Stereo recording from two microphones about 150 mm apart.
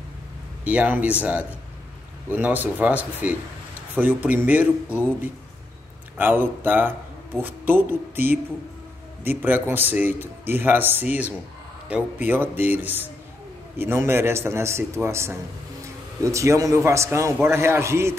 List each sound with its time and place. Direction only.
0.7 s a man's voice: 10° right (ahead or behind)
6.1 s a man's voice: 15° right (ahead or behind)